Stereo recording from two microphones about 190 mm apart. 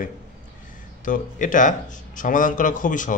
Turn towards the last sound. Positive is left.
turn(degrees=45)  # may be behind; listen again after turning